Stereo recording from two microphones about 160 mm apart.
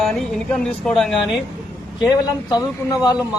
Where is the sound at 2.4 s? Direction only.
25° left (ahead or behind).